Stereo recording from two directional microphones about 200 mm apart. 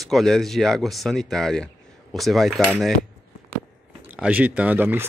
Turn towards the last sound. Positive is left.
turn(degrees=-10)  # may be behind; listen again after turning